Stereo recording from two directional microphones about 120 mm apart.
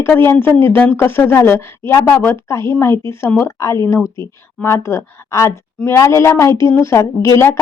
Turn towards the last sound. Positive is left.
turn(degrees=25)  # may be behind; listen again after turning